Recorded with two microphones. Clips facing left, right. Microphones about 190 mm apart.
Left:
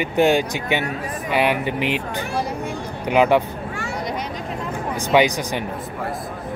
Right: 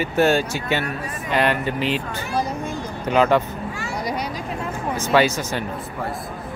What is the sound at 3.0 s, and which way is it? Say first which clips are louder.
Speech: left 1 dB; 15° left (ahead or behind).